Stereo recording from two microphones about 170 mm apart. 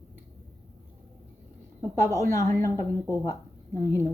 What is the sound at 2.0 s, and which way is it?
Speech, 20° right (ahead or behind).